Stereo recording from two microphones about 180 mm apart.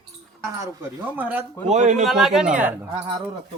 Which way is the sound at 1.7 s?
40° right (ahead or behind).